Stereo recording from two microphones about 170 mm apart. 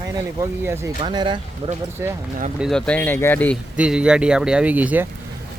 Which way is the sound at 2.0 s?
15° right (ahead or behind).